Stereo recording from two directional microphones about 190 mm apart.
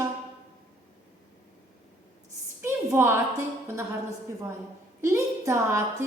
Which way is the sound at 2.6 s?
15° right (ahead or behind).